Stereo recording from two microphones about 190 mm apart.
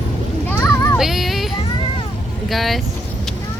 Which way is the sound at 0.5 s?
10° left (ahead or behind).